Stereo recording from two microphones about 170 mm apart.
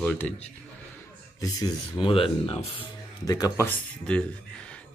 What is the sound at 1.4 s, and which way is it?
Speech, 25° left (ahead or behind).